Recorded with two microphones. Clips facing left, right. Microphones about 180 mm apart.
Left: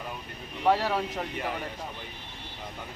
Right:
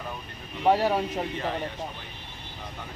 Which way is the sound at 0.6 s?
15° right (ahead or behind).